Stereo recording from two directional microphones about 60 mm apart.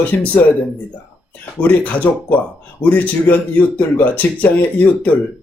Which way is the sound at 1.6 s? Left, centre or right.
Left.